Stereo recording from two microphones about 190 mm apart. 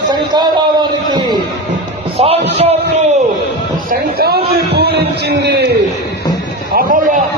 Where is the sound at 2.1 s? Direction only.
35° right (ahead or behind).